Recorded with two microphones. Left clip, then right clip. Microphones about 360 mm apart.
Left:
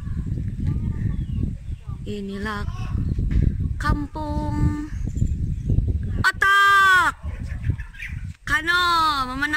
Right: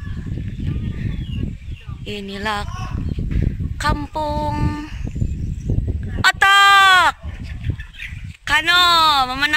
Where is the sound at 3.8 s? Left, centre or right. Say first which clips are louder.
Right 6 dB; centre.